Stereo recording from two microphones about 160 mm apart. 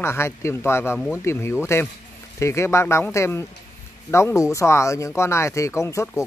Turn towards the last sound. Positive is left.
turn(degrees=20)  # may be behind; listen again after turning